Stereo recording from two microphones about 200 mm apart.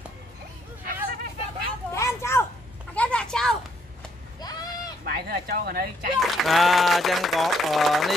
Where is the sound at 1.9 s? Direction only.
15° left (ahead or behind).